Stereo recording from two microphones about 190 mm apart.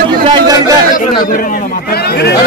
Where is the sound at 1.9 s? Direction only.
55° left (ahead or behind).